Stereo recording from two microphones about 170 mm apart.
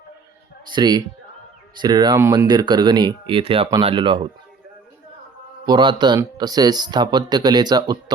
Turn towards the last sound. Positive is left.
turn(degrees=-25)  # may be behind; listen again after turning